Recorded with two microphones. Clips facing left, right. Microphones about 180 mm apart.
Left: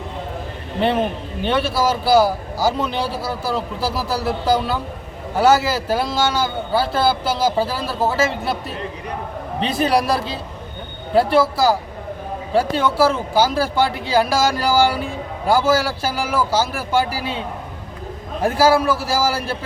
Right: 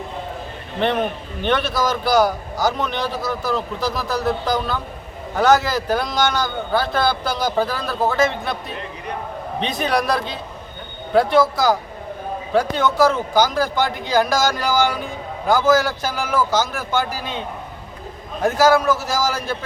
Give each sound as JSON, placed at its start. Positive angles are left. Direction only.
{"t": 1.4, "sound": "speech", "side_deg": 5}
{"t": 2.7, "sound": "a man's voice", "side_deg": 30}
{"t": 3.0, "sound": "speech", "side_deg": 10}
{"t": 9.6, "sound": "a man's voice", "side_deg": 5}
{"t": 18.4, "sound": "speech", "side_deg": 10}